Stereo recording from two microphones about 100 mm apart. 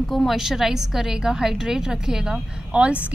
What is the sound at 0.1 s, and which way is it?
A woman's voice, centre (ahead or behind).